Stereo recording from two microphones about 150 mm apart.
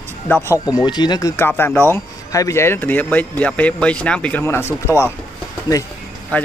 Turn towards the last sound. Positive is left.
turn(degrees=10)  # may be behind; listen again after turning